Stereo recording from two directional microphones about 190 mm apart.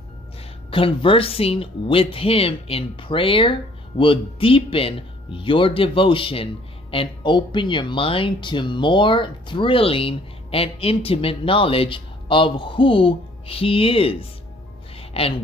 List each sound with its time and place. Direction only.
0.7 s speech: 30° left (ahead or behind)
15.0 s music: 30° left (ahead or behind)